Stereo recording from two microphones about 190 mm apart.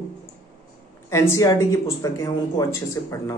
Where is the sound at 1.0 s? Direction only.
15° left (ahead or behind).